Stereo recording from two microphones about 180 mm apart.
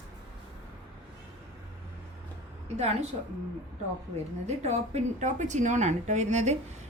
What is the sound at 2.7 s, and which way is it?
Speech, 40° right (ahead or behind).